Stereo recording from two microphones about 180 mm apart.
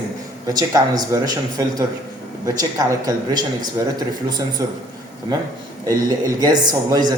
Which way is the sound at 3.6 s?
20° right (ahead or behind).